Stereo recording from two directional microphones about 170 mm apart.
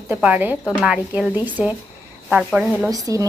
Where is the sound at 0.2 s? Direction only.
10° right (ahead or behind).